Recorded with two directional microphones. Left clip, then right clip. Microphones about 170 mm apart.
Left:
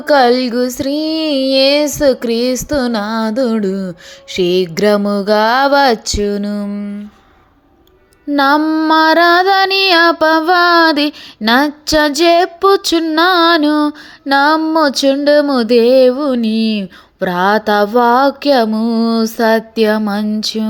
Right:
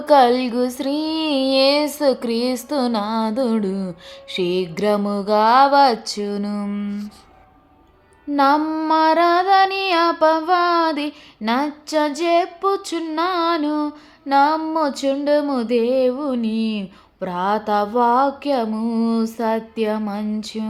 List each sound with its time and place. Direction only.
0.0 s child singing: 20° left (ahead or behind)
6.7 s speech: 10° left (ahead or behind)
8.4 s speech: 40° left (ahead or behind)
8.6 s child singing: 25° left (ahead or behind)
8.9 s music: 45° left (ahead or behind)
14.6 s speech: 40° left (ahead or behind)